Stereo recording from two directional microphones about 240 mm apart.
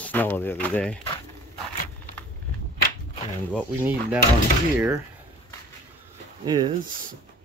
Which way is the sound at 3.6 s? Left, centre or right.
Centre.